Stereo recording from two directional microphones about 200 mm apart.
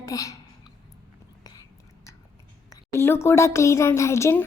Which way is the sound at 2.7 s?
10° left (ahead or behind).